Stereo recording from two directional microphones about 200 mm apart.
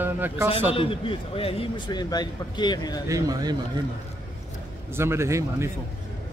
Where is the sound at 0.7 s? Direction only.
25° left (ahead or behind).